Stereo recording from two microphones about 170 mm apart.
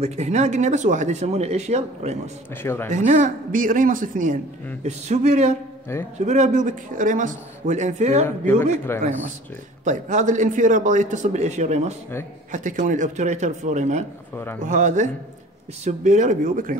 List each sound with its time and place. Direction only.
0.0 s speech: 40° right (ahead or behind)
2.5 s speech: 15° left (ahead or behind)
2.9 s a man's voice: 45° right (ahead or behind)
9.8 s a man's voice: 50° right (ahead or behind)